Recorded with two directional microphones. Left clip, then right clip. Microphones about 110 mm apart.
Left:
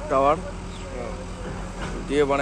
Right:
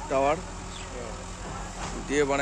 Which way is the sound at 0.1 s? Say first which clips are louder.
Left 5 dB; 55° right (ahead or behind).